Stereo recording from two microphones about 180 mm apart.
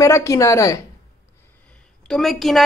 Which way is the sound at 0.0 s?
15° left (ahead or behind).